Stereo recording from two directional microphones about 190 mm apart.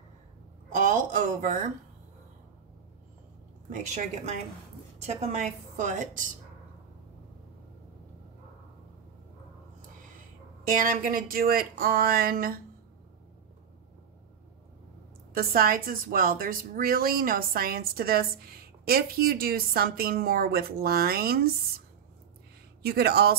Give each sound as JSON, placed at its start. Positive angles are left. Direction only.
{"t": 0.7, "sound": "a woman's voice", "side_deg": -40}
{"t": 3.9, "sound": "a woman's voice", "side_deg": -40}
{"t": 10.7, "sound": "a woman's voice", "side_deg": -45}
{"t": 15.3, "sound": "a woman's voice", "side_deg": -50}